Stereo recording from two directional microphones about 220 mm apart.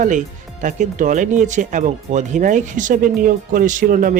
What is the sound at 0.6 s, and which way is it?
Speech, 35° right (ahead or behind).